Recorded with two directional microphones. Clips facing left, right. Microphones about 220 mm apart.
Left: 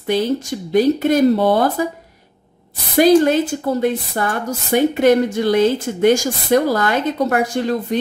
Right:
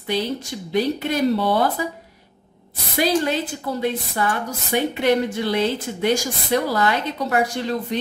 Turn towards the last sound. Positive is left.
turn(degrees=50)  # may be behind; listen again after turning